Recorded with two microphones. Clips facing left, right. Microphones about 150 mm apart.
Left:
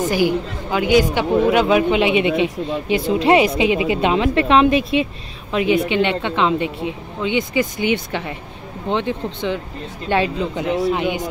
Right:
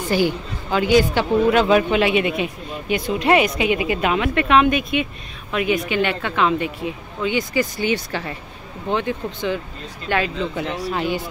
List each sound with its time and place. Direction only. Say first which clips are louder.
0.1 s a woman's voice: left 2 dB; 10° left (ahead or behind)
2.0 s a woman's voice: left 2 dB; 25° left (ahead or behind)